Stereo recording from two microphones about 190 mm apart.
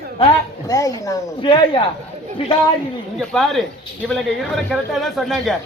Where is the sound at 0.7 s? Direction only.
15° left (ahead or behind).